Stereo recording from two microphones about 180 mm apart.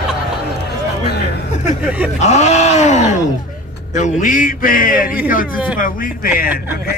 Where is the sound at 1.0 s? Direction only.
65° left (ahead or behind).